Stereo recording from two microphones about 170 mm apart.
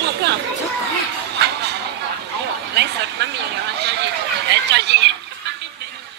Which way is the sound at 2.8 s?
80° right.